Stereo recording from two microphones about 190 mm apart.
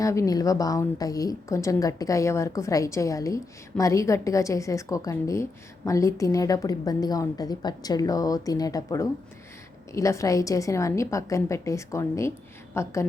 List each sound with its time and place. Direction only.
0.0 s a woman's voice: 15° left (ahead or behind)